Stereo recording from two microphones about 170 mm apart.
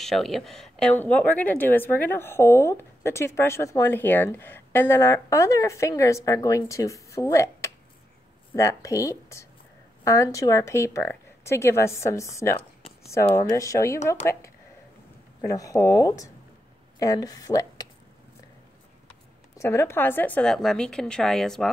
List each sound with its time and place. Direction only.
0.0 s a woman's voice: centre (ahead or behind); by 17.8 s 20° left (ahead or behind)
19.6 s a woman's voice: 15° left (ahead or behind)